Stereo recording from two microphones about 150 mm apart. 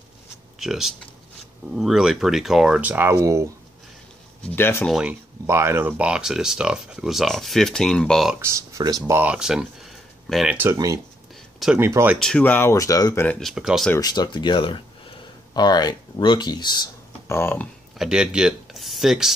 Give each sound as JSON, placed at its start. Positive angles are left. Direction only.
{"t": 0.6, "sound": "speech", "side_deg": 0}
{"t": 4.5, "sound": "speech", "side_deg": 15}
{"t": 5.5, "sound": "speech", "side_deg": -15}
{"t": 8.4, "sound": "speech", "side_deg": -20}
{"t": 10.6, "sound": "speech", "side_deg": -20}
{"t": 12.2, "sound": "speech", "side_deg": 5}
{"t": 13.4, "sound": "speech", "side_deg": 0}
{"t": 13.9, "sound": "speech", "side_deg": 25}
{"t": 17.4, "sound": "speech", "side_deg": 15}
{"t": 17.9, "sound": "speech", "side_deg": -5}